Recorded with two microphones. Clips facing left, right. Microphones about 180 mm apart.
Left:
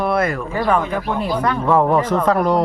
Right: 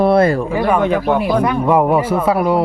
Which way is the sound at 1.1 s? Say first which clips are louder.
Right 6 dB; 70° right (ahead or behind).